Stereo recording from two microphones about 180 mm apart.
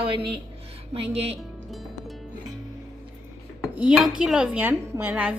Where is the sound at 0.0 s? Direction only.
30° right (ahead or behind).